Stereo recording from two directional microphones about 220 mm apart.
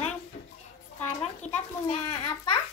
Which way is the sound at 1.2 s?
30° left (ahead or behind).